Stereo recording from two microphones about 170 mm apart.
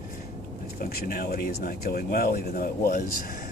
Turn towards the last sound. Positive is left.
turn(degrees=60)  # may be behind; listen again after turning